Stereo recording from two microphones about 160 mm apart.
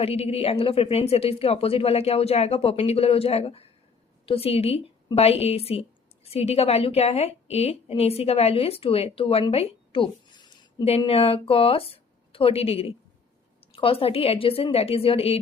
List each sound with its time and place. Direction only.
0.0 s a woman's voice: 40° left (ahead or behind)